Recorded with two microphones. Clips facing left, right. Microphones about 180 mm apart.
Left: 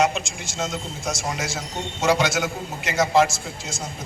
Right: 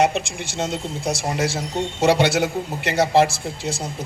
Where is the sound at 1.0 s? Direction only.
30° right (ahead or behind).